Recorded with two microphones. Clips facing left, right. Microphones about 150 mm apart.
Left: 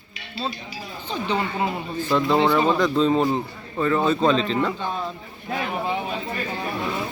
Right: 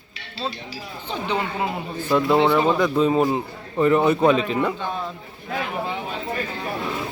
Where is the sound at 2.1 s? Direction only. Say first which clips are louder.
Right 2 dB; 10° right (ahead or behind).